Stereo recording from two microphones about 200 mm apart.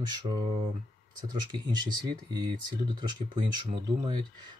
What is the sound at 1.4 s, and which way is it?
Speech, 20° right (ahead or behind).